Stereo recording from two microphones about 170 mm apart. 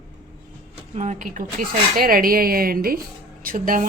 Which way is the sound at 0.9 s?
45° right (ahead or behind).